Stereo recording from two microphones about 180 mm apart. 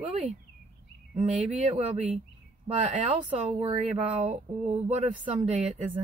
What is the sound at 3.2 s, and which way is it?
Speech, 35° right (ahead or behind).